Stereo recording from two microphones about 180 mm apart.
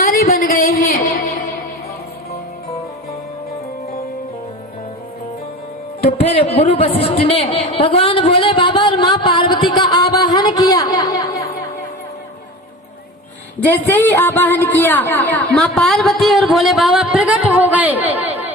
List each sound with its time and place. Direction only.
0.0 s music: 55° left (ahead or behind)
6.1 s a sound: 35° left (ahead or behind)
10.9 s chatter: 20° left (ahead or behind)
13.7 s a woman's voice: 10° left (ahead or behind); by 18.5 s 10° right (ahead or behind)